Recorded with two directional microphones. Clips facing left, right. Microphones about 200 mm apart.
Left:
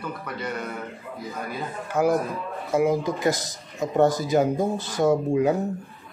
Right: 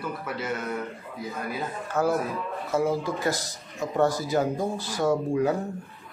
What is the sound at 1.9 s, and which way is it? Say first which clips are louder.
Speech: left 3 dB; 15° left (ahead or behind).